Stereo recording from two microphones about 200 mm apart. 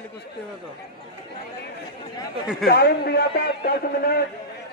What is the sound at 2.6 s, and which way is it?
A man's voice, 50° left (ahead or behind).